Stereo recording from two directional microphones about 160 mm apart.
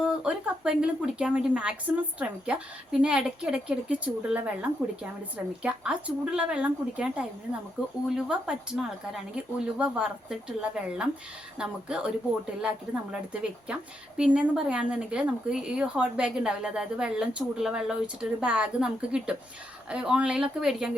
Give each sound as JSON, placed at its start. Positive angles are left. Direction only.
{"t": 0.0, "sound": "speech", "side_deg": -5}